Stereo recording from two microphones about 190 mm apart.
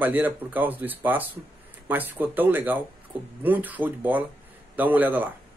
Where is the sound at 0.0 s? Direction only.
10° right (ahead or behind).